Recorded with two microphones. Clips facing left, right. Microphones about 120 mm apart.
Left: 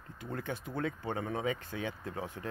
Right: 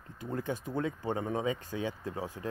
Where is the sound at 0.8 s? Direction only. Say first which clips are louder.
Right 2 dB; 25° right (ahead or behind).